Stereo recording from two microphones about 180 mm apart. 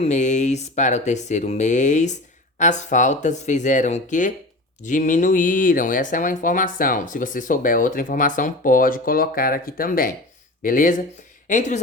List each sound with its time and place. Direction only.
0.0 s speech: 40° left (ahead or behind)